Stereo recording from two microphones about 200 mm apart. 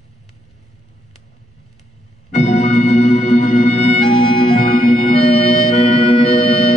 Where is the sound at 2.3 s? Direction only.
35° left (ahead or behind).